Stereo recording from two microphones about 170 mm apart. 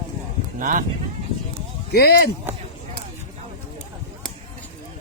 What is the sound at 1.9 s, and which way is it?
Speech, 65° left (ahead or behind).